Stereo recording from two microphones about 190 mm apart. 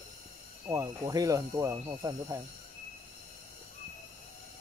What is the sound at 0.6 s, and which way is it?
Speech, 15° right (ahead or behind).